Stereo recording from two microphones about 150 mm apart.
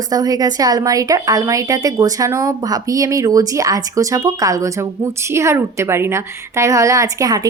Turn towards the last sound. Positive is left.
turn(degrees=-25)  # may be behind; listen again after turning